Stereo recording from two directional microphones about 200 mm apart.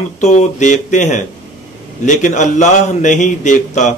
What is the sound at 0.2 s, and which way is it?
A man's voice, 35° left (ahead or behind).